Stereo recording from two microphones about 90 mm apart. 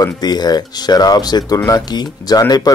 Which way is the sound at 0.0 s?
50° left (ahead or behind).